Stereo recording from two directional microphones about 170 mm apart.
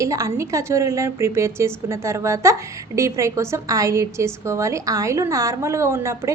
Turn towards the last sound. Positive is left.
turn(degrees=-15)  # may be behind; listen again after turning